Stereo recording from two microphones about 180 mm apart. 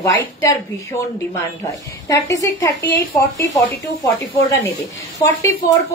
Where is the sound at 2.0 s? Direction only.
20° left (ahead or behind).